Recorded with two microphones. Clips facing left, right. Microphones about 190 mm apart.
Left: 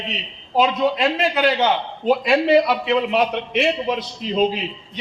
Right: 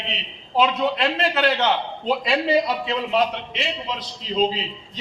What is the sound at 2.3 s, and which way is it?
A man's voice, 65° left (ahead or behind).